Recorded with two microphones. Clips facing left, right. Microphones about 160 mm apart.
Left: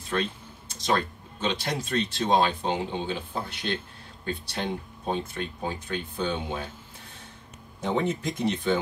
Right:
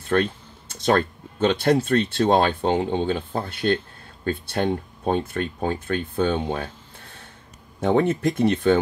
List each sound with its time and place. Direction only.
0.1 s speech: 60° right (ahead or behind)
7.8 s speech: 65° right (ahead or behind)